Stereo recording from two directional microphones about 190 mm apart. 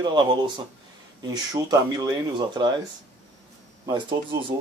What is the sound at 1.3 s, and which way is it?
Speech, 20° right (ahead or behind).